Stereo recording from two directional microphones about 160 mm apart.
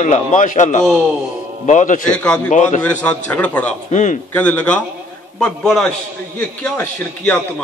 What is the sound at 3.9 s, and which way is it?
Speech, 50° left (ahead or behind).